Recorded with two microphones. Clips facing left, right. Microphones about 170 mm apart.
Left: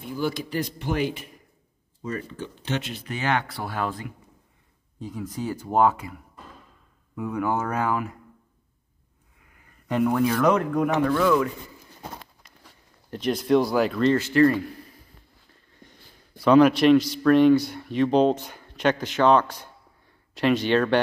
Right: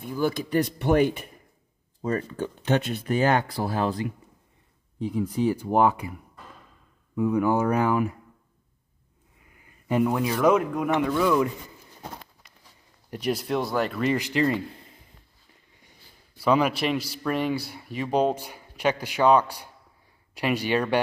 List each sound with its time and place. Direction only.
0.2 s speech: 60° right (ahead or behind); by 4.1 s 35° right (ahead or behind)
4.9 s speech: 10° right (ahead or behind)
7.2 s speech: 10° right (ahead or behind)
9.8 s speech: 10° right (ahead or behind)
13.1 s speech: 5° right (ahead or behind)
14.0 s speech: 15° right (ahead or behind)
15.8 s a man's voice: 10° right (ahead or behind)